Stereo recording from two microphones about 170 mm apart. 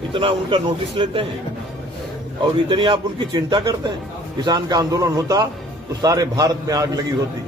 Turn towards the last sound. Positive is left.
turn(degrees=-20)  # may be behind; listen again after turning